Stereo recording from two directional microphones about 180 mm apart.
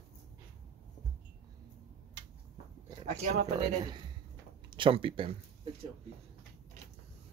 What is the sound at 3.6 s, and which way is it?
Speech, 25° right (ahead or behind).